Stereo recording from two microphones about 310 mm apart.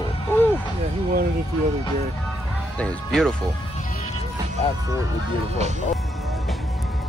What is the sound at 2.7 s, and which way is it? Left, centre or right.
Speech, centre.